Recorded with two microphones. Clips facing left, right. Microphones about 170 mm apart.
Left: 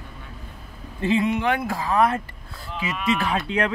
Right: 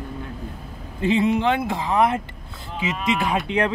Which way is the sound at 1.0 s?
20° right (ahead or behind).